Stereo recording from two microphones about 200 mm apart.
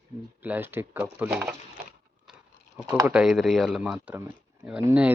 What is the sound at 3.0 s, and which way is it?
Speech, 5° right (ahead or behind).